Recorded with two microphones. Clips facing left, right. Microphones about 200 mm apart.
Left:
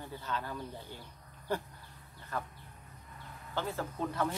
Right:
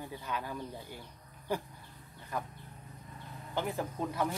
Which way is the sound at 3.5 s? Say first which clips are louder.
Right 2 dB; 15° right (ahead or behind).